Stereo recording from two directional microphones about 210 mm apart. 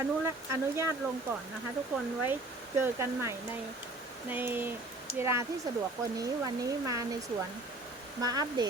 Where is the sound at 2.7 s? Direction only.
15° right (ahead or behind).